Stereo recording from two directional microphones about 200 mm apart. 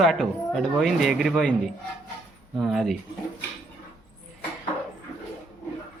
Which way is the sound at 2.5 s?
Centre (ahead or behind).